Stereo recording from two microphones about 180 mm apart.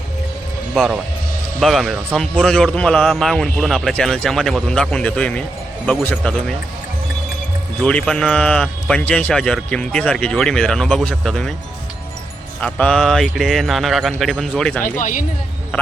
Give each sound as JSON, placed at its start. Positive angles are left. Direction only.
{"t": 0.7, "sound": "a man's voice", "side_deg": -5}
{"t": 7.9, "sound": "a man's voice", "side_deg": 5}
{"t": 12.5, "sound": "a man's voice", "side_deg": 5}
{"t": 14.8, "sound": "speech", "side_deg": 45}